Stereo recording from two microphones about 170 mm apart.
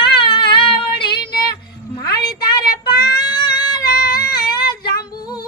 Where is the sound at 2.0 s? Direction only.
20° left (ahead or behind).